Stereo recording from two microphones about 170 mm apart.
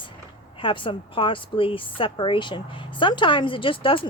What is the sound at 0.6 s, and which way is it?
A woman's voice, 30° left (ahead or behind).